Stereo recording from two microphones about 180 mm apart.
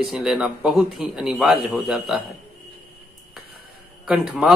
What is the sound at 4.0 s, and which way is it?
Speech, 5° right (ahead or behind).